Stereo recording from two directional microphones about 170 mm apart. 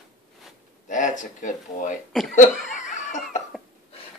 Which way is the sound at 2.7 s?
45° left (ahead or behind).